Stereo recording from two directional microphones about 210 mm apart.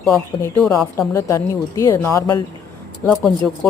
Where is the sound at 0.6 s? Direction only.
Centre (ahead or behind).